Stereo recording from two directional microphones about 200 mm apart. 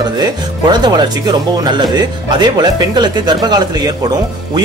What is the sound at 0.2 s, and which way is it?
Speech, 20° right (ahead or behind).